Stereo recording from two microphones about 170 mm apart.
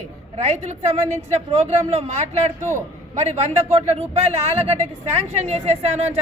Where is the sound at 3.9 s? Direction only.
40° right (ahead or behind).